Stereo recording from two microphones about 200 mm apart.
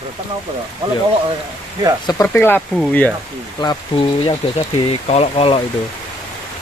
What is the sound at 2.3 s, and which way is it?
Speech, 10° left (ahead or behind).